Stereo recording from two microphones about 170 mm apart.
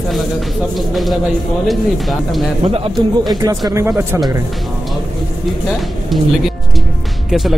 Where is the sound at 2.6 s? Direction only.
35° right (ahead or behind).